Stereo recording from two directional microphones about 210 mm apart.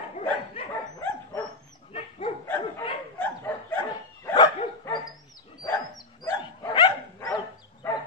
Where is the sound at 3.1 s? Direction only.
10° left (ahead or behind).